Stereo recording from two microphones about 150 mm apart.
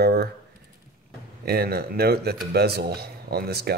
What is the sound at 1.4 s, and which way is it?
Speech, 90° right.